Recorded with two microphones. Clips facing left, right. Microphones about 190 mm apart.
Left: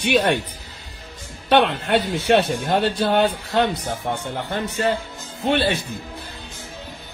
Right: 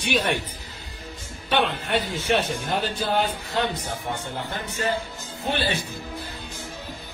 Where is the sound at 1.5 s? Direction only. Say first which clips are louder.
Left 6 dB; 60° left (ahead or behind).